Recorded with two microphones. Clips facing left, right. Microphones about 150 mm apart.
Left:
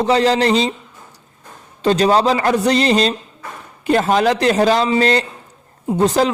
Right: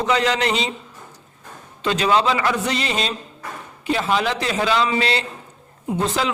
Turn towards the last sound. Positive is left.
turn(degrees=40)  # may be behind; listen again after turning